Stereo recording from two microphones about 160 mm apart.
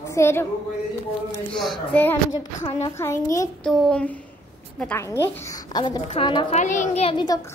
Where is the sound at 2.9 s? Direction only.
15° left (ahead or behind).